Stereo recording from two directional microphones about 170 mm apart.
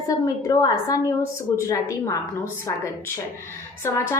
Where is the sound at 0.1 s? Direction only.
20° left (ahead or behind).